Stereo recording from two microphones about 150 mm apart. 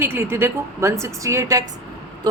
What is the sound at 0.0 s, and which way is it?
A woman's voice, 15° right (ahead or behind).